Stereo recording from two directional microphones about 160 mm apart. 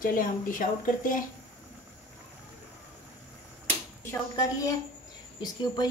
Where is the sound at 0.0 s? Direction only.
60° left (ahead or behind).